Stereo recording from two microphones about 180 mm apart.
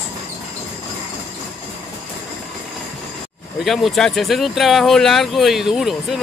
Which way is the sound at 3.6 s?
Centre (ahead or behind).